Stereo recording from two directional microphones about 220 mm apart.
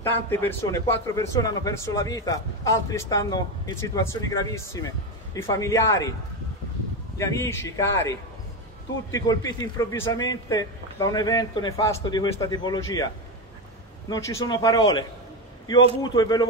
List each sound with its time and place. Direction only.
0.0 s a man's voice: 10° left (ahead or behind)
7.2 s a man's voice: 10° left (ahead or behind)